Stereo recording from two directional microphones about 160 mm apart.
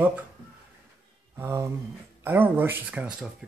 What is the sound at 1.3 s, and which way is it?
Speech, 15° right (ahead or behind).